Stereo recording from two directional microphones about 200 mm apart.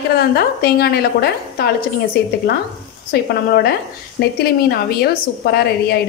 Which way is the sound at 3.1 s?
50° left (ahead or behind).